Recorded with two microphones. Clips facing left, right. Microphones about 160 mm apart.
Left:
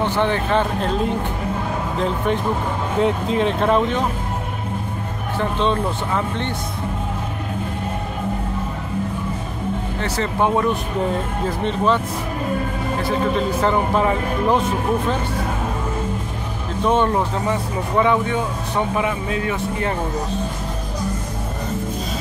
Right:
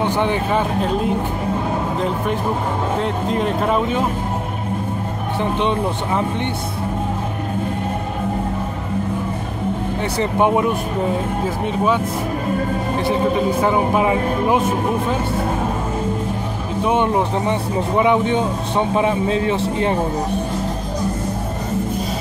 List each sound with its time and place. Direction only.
0.0 s speech: 15° right (ahead or behind)
3.0 s speech: centre (ahead or behind)
5.4 s speech: 15° right (ahead or behind)
10.1 s speech: 15° right (ahead or behind)
13.6 s speech: 10° right (ahead or behind)
16.8 s speech: 15° right (ahead or behind)